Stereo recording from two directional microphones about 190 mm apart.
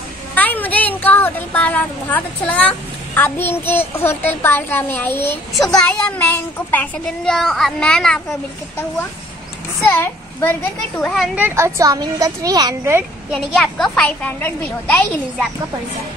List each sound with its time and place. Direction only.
0.3 s a woman's voice: 10° left (ahead or behind)
9.8 s a child's voice: 10° left (ahead or behind)
11.3 s a woman's voice: 10° right (ahead or behind); by 15.0 s 10° left (ahead or behind)